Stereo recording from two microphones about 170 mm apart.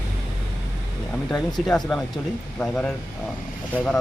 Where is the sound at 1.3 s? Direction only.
5° left (ahead or behind).